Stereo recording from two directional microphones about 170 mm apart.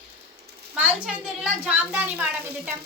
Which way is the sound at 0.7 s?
10° right (ahead or behind).